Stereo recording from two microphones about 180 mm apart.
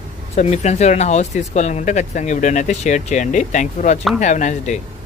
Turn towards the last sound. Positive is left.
turn(degrees=40)  # may be behind; listen again after turning